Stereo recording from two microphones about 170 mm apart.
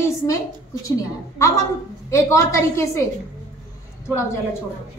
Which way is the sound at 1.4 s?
15° left (ahead or behind).